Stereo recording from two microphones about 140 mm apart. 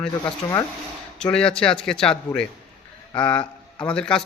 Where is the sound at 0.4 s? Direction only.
15° left (ahead or behind).